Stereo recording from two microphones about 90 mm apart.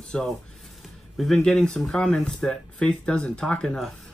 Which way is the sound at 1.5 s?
5° left (ahead or behind).